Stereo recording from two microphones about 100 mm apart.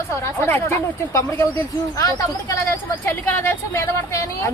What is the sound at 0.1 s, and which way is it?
Speech, 25° left (ahead or behind).